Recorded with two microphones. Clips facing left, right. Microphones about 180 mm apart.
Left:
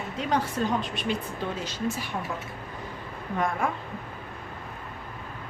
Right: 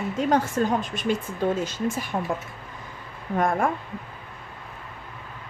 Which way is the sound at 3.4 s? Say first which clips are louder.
Right 5 dB; 45° right (ahead or behind).